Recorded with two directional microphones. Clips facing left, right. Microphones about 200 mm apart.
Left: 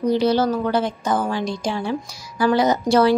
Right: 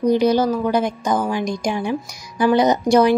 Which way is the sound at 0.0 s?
15° right (ahead or behind).